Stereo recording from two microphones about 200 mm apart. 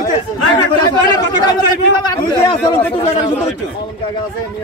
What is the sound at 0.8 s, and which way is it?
Chatter, 20° left (ahead or behind).